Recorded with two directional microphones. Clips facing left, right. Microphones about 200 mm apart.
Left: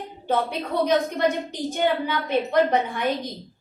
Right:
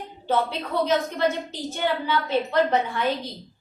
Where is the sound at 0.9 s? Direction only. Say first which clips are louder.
Left 2 dB; 15° left (ahead or behind).